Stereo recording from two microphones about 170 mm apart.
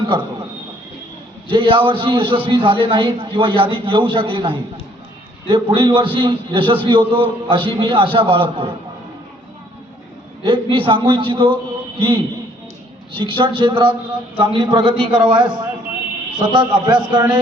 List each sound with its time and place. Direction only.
1.5 s a man's voice: 30° right (ahead or behind)
10.4 s a man's voice: 30° right (ahead or behind)